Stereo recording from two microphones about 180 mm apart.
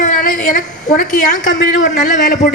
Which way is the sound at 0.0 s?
50° left (ahead or behind).